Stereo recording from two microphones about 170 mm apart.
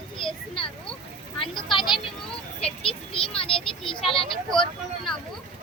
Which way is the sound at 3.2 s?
35° left (ahead or behind).